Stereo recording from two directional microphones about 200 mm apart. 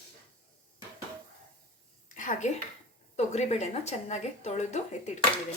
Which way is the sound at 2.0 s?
40° left (ahead or behind).